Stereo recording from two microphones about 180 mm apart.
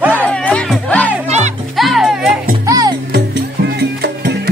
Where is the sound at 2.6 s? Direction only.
20° right (ahead or behind).